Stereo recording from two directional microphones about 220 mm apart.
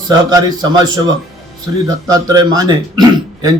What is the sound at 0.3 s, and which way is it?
Speech, 20° right (ahead or behind).